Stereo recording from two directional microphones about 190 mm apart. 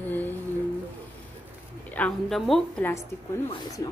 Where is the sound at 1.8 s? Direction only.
5° left (ahead or behind).